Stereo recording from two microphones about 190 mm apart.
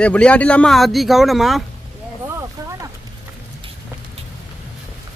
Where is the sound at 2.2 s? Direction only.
15° right (ahead or behind).